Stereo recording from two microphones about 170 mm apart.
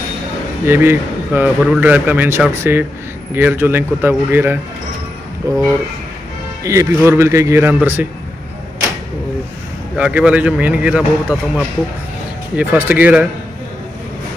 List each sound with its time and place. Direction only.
0.7 s a man's voice: 10° right (ahead or behind)
9.9 s a man's voice: 5° right (ahead or behind)